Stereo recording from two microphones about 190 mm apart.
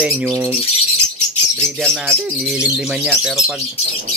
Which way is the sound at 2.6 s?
5° right (ahead or behind).